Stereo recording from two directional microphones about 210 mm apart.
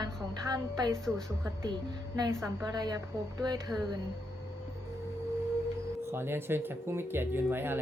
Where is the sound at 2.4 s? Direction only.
15° right (ahead or behind).